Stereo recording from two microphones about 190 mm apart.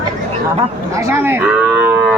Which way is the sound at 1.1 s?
10° right (ahead or behind).